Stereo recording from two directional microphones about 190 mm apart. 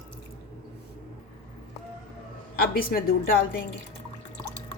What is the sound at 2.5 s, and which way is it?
A woman's voice, 50° left (ahead or behind).